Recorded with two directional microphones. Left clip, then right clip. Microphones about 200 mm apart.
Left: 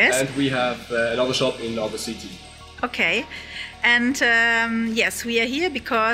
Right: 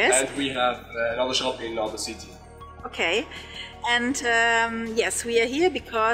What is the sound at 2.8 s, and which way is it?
Speech, 30° right (ahead or behind).